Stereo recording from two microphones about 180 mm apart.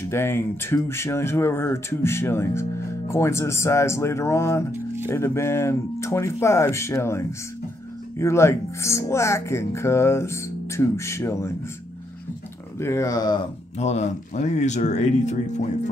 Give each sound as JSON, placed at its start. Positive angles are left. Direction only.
{"t": 0.1, "sound": "speech", "side_deg": 15}
{"t": 12.7, "sound": "speech", "side_deg": 15}
{"t": 13.7, "sound": "speech", "side_deg": 40}